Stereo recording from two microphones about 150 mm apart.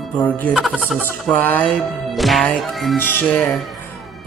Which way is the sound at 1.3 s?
10° left (ahead or behind).